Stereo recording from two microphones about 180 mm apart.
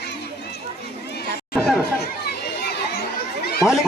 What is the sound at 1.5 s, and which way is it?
Chatter, centre (ahead or behind).